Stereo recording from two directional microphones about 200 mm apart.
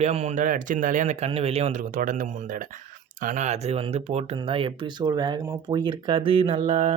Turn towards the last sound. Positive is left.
turn(degrees=-30)  # may be behind; listen again after turning